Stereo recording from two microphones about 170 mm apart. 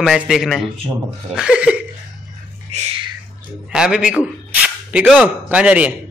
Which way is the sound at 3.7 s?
5° right (ahead or behind).